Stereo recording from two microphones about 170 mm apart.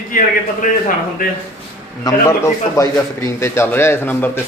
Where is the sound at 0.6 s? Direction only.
50° left (ahead or behind).